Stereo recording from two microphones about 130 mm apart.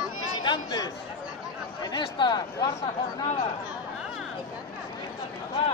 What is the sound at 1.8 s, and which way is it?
Speech, 35° left (ahead or behind).